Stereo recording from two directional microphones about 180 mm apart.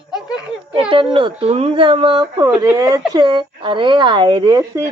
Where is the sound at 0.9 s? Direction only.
30° right (ahead or behind).